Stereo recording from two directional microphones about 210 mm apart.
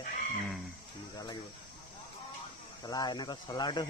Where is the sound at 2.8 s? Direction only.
20° left (ahead or behind).